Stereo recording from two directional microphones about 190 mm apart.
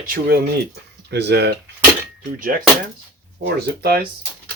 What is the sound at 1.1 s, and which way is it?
Speech, 60° right (ahead or behind).